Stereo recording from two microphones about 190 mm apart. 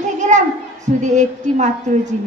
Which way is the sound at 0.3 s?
40° right (ahead or behind).